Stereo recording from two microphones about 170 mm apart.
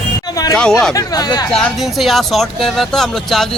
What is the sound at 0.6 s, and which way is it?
Speech, 5° left (ahead or behind).